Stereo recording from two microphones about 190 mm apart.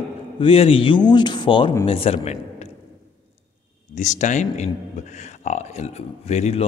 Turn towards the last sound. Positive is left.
turn(degrees=35)  # may be behind; listen again after turning